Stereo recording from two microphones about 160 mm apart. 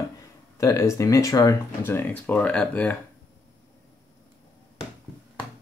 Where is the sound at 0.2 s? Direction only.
20° left (ahead or behind).